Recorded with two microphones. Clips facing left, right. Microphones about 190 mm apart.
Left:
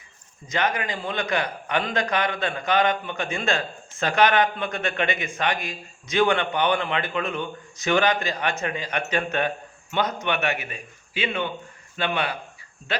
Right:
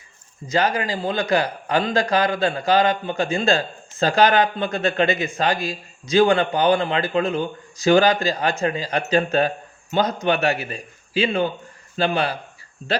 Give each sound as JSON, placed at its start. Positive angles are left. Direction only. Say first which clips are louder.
{"t": 0.4, "sound": "a man's voice", "louder": "right 5 dB", "side_deg": -30}